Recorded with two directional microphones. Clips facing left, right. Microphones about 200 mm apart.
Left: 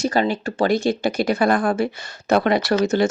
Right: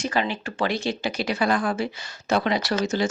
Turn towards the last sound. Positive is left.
turn(degrees=60)  # may be behind; listen again after turning